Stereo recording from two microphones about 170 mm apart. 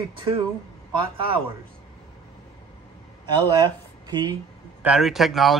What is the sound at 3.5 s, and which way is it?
Speech, 25° right (ahead or behind).